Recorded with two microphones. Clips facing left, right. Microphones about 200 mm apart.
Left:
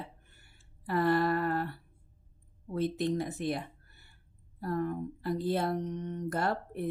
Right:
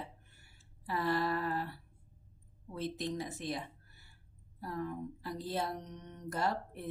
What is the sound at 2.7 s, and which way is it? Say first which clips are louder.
Speech: left 7 dB; 55° left (ahead or behind).